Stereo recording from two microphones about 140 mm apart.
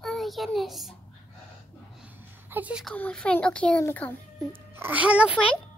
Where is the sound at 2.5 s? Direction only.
10° right (ahead or behind).